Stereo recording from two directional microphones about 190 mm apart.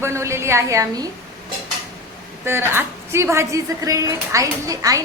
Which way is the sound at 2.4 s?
10° right (ahead or behind).